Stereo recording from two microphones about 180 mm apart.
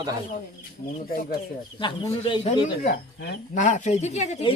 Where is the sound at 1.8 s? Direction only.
25° left (ahead or behind).